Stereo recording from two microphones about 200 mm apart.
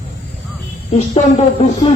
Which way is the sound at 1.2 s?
30° left (ahead or behind).